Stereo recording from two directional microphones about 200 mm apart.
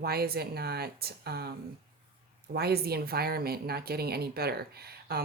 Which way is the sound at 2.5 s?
50° right (ahead or behind).